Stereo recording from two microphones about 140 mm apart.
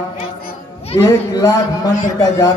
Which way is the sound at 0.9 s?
25° left (ahead or behind).